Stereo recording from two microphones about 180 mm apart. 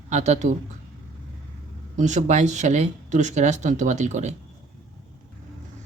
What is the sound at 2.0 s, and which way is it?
Speech, 40° right (ahead or behind).